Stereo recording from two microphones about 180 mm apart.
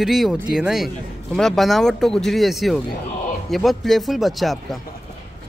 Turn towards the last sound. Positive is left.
turn(degrees=0)  # may be behind; listen again after turning